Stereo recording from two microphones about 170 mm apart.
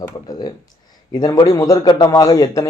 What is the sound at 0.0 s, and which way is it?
A man's voice, 25° left (ahead or behind).